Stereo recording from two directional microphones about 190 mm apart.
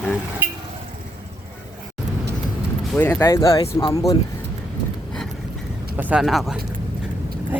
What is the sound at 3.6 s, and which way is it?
Speech, 30° left (ahead or behind).